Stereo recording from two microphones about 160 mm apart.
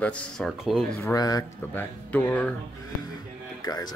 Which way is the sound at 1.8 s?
10° left (ahead or behind).